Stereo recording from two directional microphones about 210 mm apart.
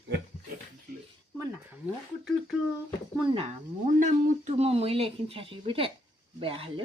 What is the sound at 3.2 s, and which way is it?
Speech, 25° right (ahead or behind).